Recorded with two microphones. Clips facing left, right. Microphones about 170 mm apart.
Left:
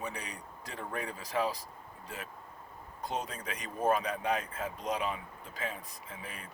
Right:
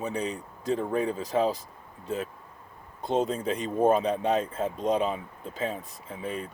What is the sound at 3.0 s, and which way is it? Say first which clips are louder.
Speech: right 11 dB; 25° right (ahead or behind).